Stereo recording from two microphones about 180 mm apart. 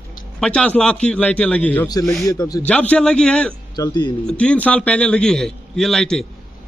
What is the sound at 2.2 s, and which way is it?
Speech, 20° left (ahead or behind).